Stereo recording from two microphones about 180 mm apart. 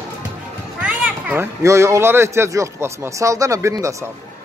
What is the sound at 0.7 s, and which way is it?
Speech, 10° right (ahead or behind).